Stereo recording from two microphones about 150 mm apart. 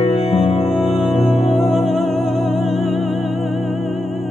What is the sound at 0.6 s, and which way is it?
Music, centre (ahead or behind).